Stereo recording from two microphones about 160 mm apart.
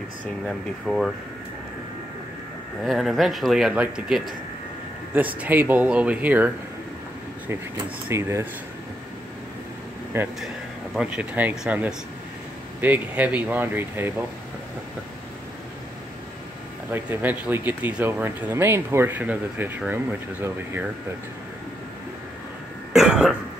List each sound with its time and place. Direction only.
0.5 s speech: centre (ahead or behind)
2.8 s speech: centre (ahead or behind)
8.1 s speech: 15° right (ahead or behind)
10.1 s speech: 15° right (ahead or behind)
16.9 s speech: 10° right (ahead or behind)
22.9 s cough: 5° right (ahead or behind)